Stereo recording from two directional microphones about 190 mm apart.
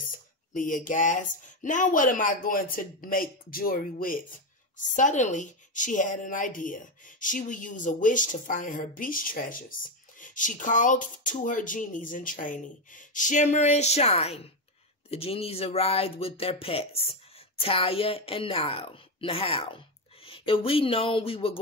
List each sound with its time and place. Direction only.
0.5 s a woman's voice: 45° left (ahead or behind)